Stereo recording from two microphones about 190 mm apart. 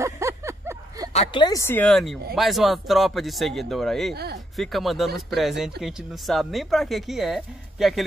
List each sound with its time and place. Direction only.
0.0 s a sound: 15° right (ahead or behind)
1.1 s speech: 25° left (ahead or behind)
1.7 s speech: 5° left (ahead or behind)
4.1 s speech: 60° right (ahead or behind)
4.6 s speech: centre (ahead or behind)